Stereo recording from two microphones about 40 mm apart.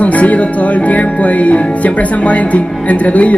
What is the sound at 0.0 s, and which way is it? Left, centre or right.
Speech, left.